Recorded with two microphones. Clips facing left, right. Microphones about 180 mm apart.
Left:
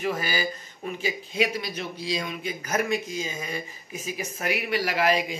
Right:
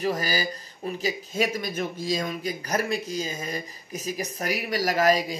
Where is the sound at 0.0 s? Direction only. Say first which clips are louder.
Right 1 dB; 40° right (ahead or behind).